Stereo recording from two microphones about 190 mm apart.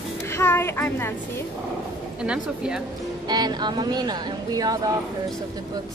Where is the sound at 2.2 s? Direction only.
5° right (ahead or behind).